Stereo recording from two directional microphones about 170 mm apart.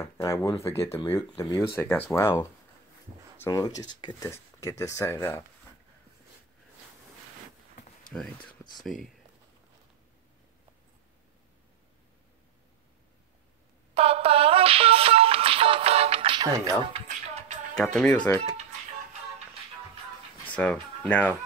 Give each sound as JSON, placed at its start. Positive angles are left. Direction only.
{"t": 0.0, "sound": "speech", "side_deg": 20}
{"t": 3.4, "sound": "speech", "side_deg": 20}
{"t": 8.1, "sound": "speech", "side_deg": 5}
{"t": 13.9, "sound": "music", "side_deg": -35}
{"t": 16.4, "sound": "speech", "side_deg": -20}
{"t": 16.8, "sound": "speech", "side_deg": -35}
{"t": 17.7, "sound": "speech", "side_deg": 0}
{"t": 20.4, "sound": "speech", "side_deg": 5}